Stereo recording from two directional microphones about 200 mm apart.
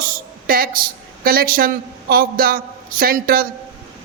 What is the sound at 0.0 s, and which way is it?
A woman's voice, 45° right (ahead or behind).